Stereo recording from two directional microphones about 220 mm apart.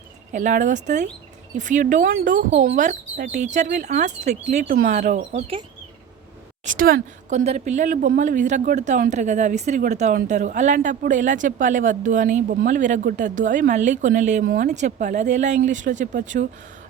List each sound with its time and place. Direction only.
0.3 s a woman's voice: 35° right (ahead or behind)
6.7 s a woman's voice: 40° right (ahead or behind)